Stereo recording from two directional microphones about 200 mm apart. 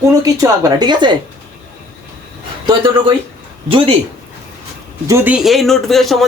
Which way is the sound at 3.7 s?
25° right (ahead or behind).